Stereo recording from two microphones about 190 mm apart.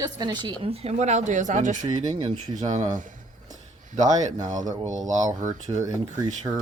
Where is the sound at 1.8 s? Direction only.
20° right (ahead or behind).